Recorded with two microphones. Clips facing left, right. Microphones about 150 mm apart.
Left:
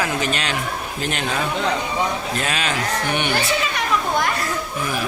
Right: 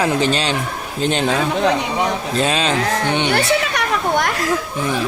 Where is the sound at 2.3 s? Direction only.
30° right (ahead or behind).